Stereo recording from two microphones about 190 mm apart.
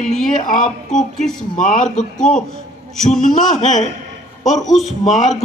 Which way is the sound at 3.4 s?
40° left (ahead or behind).